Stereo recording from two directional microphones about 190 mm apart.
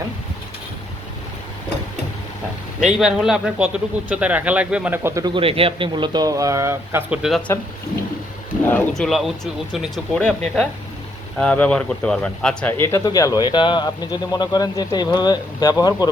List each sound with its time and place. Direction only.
3.0 s speech: 5° right (ahead or behind)
8.6 s speech: 5° left (ahead or behind)